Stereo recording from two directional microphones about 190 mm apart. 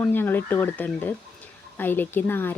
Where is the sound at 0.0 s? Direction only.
10° left (ahead or behind).